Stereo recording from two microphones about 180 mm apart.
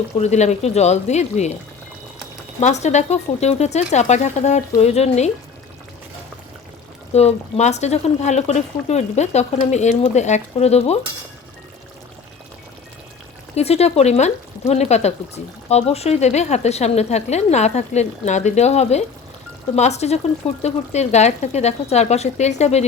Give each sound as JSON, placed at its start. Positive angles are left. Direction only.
{"t": 0.2, "sound": "speech", "side_deg": 40}
{"t": 2.6, "sound": "speech", "side_deg": 40}
{"t": 7.1, "sound": "speech", "side_deg": 35}
{"t": 13.6, "sound": "speech", "side_deg": 35}